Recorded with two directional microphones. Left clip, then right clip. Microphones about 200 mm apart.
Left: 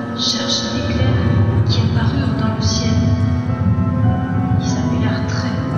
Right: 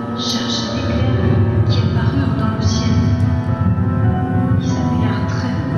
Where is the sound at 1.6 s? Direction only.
20° left (ahead or behind).